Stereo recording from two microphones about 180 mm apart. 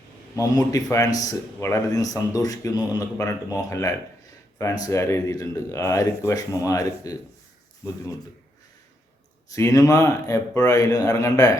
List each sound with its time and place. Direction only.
0.3 s a man's voice: 20° left (ahead or behind)
9.5 s speech: 20° left (ahead or behind)